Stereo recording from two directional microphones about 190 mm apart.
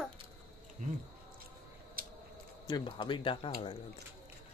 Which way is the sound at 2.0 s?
50° right (ahead or behind).